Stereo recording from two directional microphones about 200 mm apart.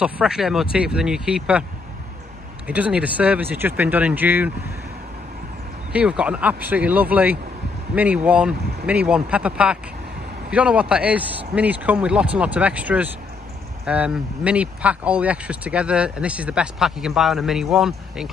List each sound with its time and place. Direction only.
0.0 s speech: 5° right (ahead or behind)
2.6 s speech: 5° right (ahead or behind)
5.9 s speech: 5° right (ahead or behind)